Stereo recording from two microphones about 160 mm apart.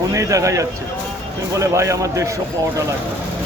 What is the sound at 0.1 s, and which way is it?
A man's voice, 20° right (ahead or behind).